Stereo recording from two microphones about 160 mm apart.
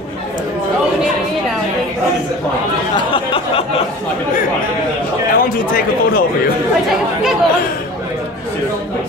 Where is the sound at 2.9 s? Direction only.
35° left (ahead or behind).